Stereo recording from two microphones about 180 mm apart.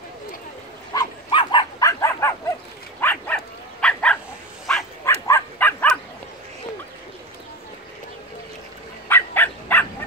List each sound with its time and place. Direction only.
0.9 s dog: 25° left (ahead or behind); by 4.2 s 5° left (ahead or behind)
5.0 s bow-wow: 15° left (ahead or behind)
9.1 s livestock: 10° left (ahead or behind)